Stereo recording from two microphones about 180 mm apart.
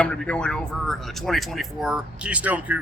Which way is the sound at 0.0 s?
5° left (ahead or behind).